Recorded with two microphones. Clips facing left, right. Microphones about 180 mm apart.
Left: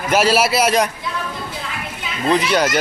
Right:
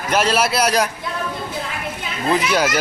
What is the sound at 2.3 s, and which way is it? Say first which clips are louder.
Speech: left 2 dB; 5° right (ahead or behind).